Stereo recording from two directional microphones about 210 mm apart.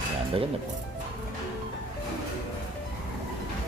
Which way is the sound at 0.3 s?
25° right (ahead or behind).